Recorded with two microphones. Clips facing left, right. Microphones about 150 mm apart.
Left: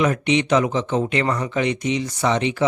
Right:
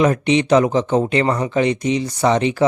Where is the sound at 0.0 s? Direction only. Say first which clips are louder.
Right 4 dB; 35° right (ahead or behind).